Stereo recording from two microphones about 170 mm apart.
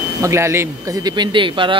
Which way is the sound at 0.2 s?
15° right (ahead or behind).